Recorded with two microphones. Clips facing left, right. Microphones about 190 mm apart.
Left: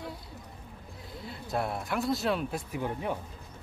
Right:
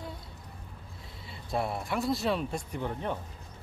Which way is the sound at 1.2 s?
Centre (ahead or behind).